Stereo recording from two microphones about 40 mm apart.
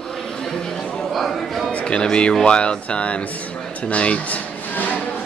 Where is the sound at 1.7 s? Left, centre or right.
Left.